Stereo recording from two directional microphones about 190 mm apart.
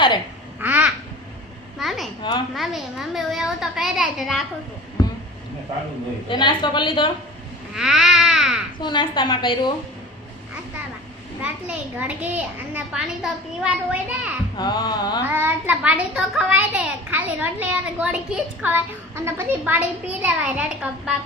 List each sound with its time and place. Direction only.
0.6 s babbling: 5° right (ahead or behind)
2.6 s a child's voice: centre (ahead or behind)
6.2 s a woman's voice: 25° left (ahead or behind)
7.8 s a sound: centre (ahead or behind)
8.8 s a woman's voice: 25° left (ahead or behind)
11.4 s a child's voice: 5° right (ahead or behind)
14.5 s a woman's voice: 20° left (ahead or behind)
15.3 s a child's voice: 10° right (ahead or behind)